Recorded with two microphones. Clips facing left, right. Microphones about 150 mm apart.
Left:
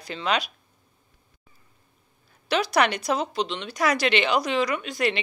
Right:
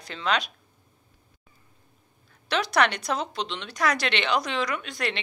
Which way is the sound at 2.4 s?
5° left (ahead or behind).